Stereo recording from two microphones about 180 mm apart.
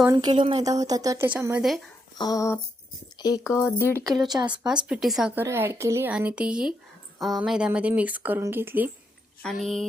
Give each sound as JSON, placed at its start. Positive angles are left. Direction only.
{"t": 0.0, "sound": "a woman's voice", "side_deg": -20}
{"t": 2.1, "sound": "speech", "side_deg": 20}
{"t": 3.8, "sound": "speech", "side_deg": -15}
{"t": 4.6, "sound": "a woman's voice", "side_deg": -5}
{"t": 9.4, "sound": "speech", "side_deg": 0}